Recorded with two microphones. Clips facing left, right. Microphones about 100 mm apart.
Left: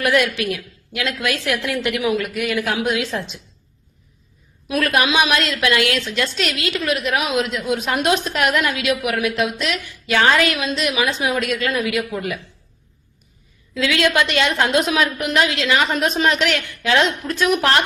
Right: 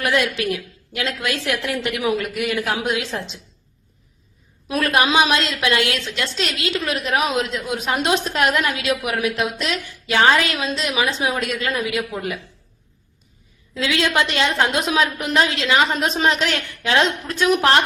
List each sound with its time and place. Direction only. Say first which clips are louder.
0.0 s a woman's voice: left 2 dB; 25° right (ahead or behind)
4.7 s a woman's voice: even; 30° right (ahead or behind)
13.7 s a woman's voice: left 2 dB; 25° right (ahead or behind)